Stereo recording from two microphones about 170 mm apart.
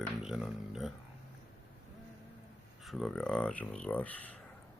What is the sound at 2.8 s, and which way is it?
Speech, centre (ahead or behind).